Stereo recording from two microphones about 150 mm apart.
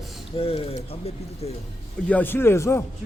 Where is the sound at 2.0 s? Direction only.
10° left (ahead or behind).